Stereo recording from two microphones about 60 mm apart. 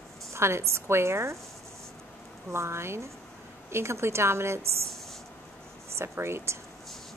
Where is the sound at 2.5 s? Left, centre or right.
Right.